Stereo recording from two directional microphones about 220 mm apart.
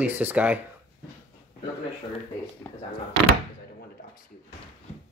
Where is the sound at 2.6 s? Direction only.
5° left (ahead or behind).